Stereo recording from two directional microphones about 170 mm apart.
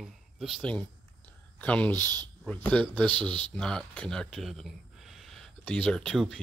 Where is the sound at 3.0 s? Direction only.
30° right (ahead or behind).